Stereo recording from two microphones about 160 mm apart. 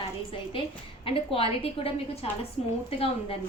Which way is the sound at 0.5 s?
35° left (ahead or behind).